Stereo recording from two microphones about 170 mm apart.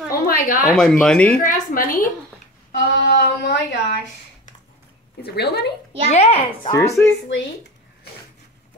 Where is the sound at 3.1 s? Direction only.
75° left (ahead or behind).